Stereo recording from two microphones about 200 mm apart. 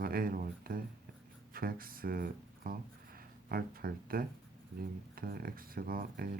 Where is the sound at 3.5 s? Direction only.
45° right (ahead or behind).